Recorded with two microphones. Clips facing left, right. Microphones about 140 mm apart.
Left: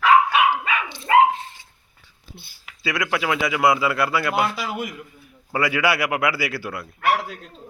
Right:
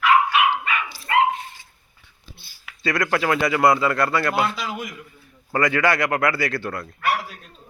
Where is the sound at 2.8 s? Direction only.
5° left (ahead or behind).